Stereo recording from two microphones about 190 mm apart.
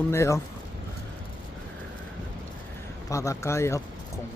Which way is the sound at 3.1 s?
15° left (ahead or behind).